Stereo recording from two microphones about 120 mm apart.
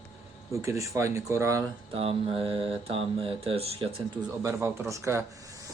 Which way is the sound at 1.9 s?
55° right (ahead or behind).